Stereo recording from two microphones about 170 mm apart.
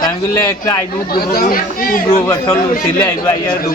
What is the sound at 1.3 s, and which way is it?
Speech, 55° left (ahead or behind).